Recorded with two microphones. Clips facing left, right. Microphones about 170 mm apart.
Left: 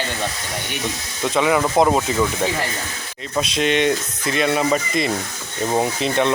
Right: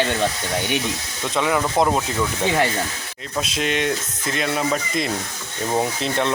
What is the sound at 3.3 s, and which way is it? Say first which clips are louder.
Speech: left 4 dB; centre (ahead or behind).